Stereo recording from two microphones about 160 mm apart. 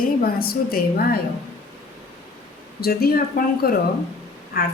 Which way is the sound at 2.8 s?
75° left (ahead or behind).